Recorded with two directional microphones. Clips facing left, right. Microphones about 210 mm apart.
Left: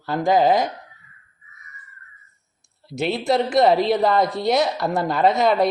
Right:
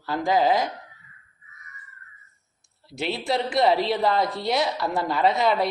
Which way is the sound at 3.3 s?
45° left (ahead or behind).